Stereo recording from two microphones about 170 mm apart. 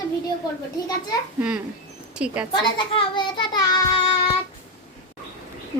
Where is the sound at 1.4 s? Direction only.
5° right (ahead or behind).